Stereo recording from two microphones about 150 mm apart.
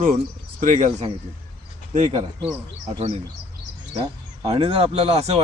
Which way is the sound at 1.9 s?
45° right (ahead or behind).